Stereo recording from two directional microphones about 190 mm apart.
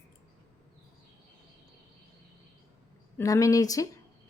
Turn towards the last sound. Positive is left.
turn(degrees=20)  # may be behind; listen again after turning